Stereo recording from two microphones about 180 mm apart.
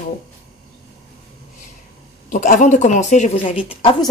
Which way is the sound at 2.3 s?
45° left (ahead or behind).